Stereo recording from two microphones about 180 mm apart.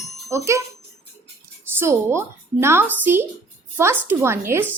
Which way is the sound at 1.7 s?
15° right (ahead or behind).